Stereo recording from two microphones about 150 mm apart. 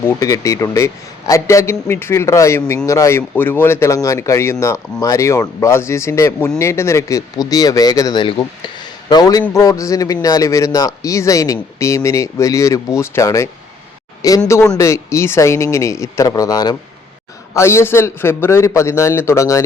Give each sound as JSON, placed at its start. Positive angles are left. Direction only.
{"t": 0.0, "sound": "a man's voice", "side_deg": 20}